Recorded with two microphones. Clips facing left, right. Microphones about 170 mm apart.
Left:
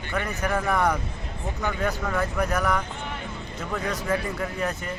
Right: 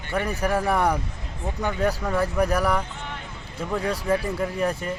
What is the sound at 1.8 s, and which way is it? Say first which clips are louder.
Speech: right 4 dB; 35° right (ahead or behind).